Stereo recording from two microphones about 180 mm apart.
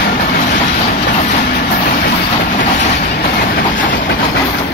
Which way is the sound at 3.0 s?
60° left (ahead or behind).